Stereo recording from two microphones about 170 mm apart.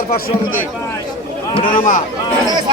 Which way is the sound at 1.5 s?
30° left (ahead or behind).